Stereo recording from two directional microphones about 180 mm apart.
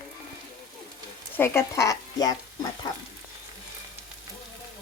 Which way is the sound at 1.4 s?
15° left (ahead or behind).